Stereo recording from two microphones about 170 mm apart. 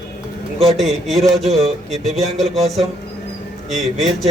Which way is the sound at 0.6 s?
Centre (ahead or behind).